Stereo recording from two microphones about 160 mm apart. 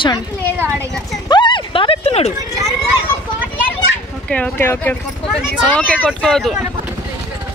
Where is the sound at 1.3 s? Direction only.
30° left (ahead or behind).